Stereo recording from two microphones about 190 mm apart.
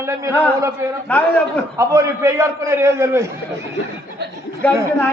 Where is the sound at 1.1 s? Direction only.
5° left (ahead or behind).